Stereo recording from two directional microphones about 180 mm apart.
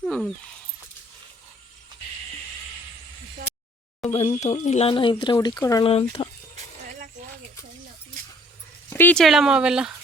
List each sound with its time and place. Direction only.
0.0 s speech: 5° left (ahead or behind)
4.1 s speech: 35° left (ahead or behind); by 5.8 s 20° left (ahead or behind)
5.8 s speech: 35° left (ahead or behind)
8.9 s speech: 10° left (ahead or behind)